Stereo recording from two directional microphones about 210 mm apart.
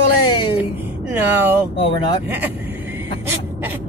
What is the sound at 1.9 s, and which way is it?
Speech, 25° left (ahead or behind).